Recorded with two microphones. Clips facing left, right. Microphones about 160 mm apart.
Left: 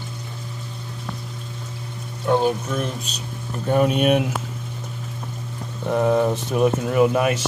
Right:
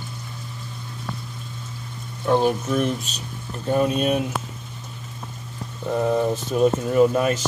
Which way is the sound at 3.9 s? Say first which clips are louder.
Left 3 dB; 80° left.